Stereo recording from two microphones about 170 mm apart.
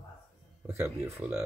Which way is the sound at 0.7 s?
10° right (ahead or behind).